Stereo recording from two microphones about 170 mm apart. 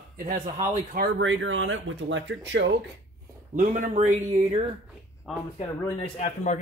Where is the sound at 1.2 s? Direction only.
90° right.